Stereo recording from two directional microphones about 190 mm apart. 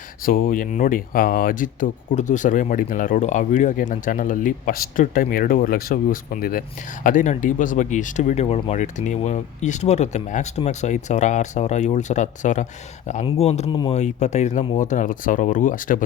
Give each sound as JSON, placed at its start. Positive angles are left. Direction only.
{"t": 0.3, "sound": "speech", "side_deg": 45}